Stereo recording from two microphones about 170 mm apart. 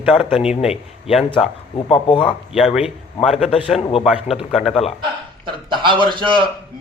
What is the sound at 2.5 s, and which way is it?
Speech, 5° right (ahead or behind).